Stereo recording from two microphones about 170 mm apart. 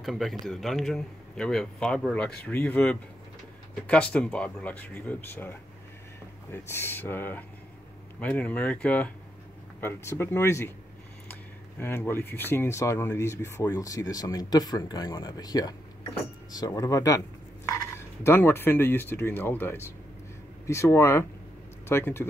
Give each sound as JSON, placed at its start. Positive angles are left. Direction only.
{"t": 0.0, "sound": "speech", "side_deg": 0}
{"t": 11.8, "sound": "speech", "side_deg": 15}